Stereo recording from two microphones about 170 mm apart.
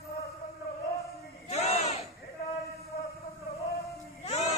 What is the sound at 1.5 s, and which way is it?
Battle cry, 40° left (ahead or behind).